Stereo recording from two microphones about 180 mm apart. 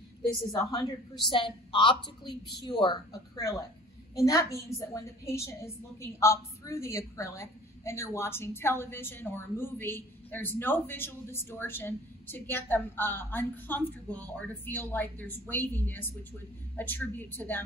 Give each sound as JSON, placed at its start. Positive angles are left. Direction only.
{"t": 0.5, "sound": "a woman's voice", "side_deg": 25}